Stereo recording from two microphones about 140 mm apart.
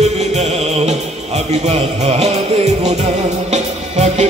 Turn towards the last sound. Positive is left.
turn(degrees=-55)  # may be behind; listen again after turning